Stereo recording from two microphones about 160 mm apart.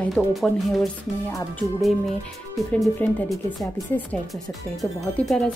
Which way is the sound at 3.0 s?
10° left (ahead or behind).